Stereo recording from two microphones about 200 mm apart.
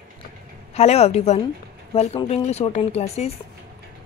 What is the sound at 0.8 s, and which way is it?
A woman's voice, 30° left (ahead or behind).